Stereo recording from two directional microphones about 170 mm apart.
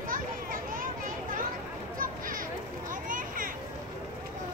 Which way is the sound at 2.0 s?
55° right (ahead or behind).